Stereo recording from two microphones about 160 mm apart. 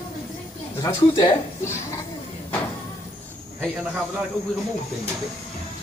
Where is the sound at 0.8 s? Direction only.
20° left (ahead or behind).